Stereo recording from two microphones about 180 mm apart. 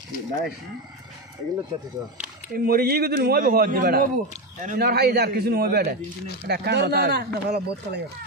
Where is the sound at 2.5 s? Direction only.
55° right (ahead or behind).